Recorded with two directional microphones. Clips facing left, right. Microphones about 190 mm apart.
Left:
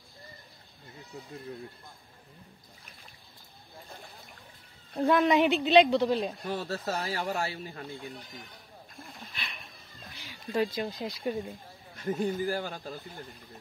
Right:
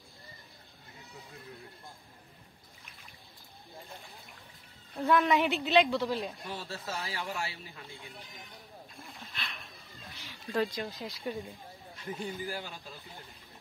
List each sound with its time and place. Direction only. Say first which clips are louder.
5.0 s a woman's voice: left 3 dB; 20° left (ahead or behind)
6.4 s speech: left 7 dB; 45° left (ahead or behind)
9.3 s a sound: even; 5° left (ahead or behind)
10.5 s a woman's voice: left 3 dB; 10° left (ahead or behind)
12.0 s speech: left 8 dB; 45° left (ahead or behind)